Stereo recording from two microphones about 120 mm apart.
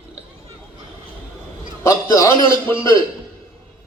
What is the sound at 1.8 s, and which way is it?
Speech, 25° left (ahead or behind).